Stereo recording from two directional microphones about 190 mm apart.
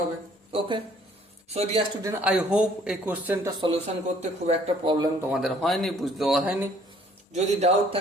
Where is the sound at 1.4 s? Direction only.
30° right (ahead or behind).